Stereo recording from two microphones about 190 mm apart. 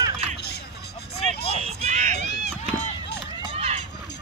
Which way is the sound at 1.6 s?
40° right (ahead or behind).